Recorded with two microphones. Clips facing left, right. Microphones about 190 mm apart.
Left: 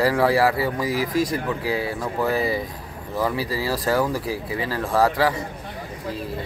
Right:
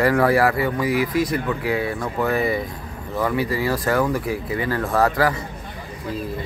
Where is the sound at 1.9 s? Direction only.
5° left (ahead or behind).